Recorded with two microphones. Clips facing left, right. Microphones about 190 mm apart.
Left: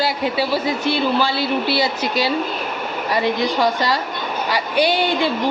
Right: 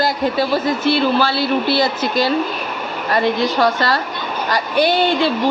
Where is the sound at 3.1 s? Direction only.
15° left (ahead or behind).